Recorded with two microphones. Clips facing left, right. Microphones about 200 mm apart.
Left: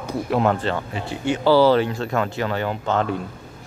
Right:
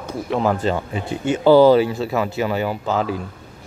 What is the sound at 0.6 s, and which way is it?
Speech, 10° right (ahead or behind).